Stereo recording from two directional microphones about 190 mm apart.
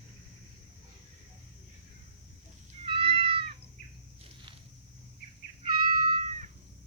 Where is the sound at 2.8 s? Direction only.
30° right (ahead or behind).